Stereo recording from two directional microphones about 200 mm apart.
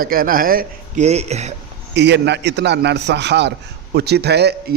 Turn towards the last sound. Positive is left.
turn(degrees=-55)  # may be behind; listen again after turning